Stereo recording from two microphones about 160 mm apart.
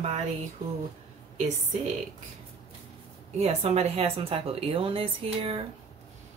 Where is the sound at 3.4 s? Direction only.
40° right (ahead or behind).